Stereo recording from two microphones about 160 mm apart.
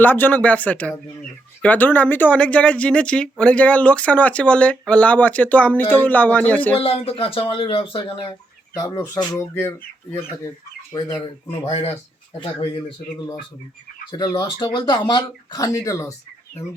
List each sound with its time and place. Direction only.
0.0 s speech: 10° left (ahead or behind)
6.7 s speech: 35° left (ahead or behind)
8.7 s speech: 20° left (ahead or behind)
11.6 s speech: 40° left (ahead or behind)
14.1 s speech: 25° left (ahead or behind)